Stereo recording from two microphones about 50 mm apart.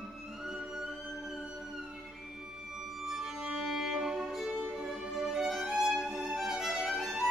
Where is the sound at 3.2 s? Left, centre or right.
Centre.